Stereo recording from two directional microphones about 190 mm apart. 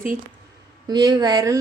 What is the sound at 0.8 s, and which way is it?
Speech, 20° right (ahead or behind).